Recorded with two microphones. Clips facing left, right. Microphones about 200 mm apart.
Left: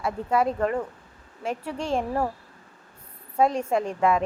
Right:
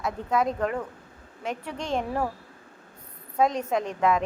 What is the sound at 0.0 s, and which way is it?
A woman's voice, 10° left (ahead or behind).